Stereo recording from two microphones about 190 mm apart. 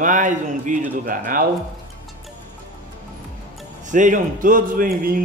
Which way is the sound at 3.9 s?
40° right (ahead or behind).